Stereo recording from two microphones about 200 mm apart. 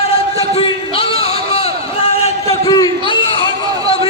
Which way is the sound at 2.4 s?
20° left (ahead or behind).